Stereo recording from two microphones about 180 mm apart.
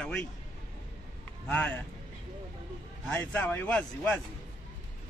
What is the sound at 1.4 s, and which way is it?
Speech, 5° left (ahead or behind).